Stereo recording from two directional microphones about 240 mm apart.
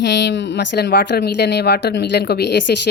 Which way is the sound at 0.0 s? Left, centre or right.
Left.